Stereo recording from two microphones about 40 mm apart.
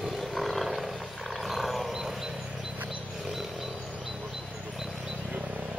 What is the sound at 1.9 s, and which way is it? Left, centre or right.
Dog, centre.